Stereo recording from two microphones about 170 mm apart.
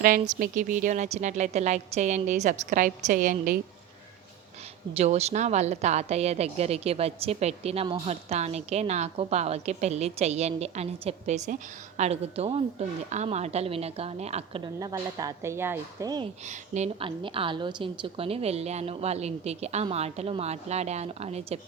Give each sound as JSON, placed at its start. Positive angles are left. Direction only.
{"t": 0.0, "sound": "a woman's voice", "side_deg": -55}
{"t": 4.9, "sound": "a woman's voice", "side_deg": -40}
{"t": 16.5, "sound": "a woman's voice", "side_deg": -40}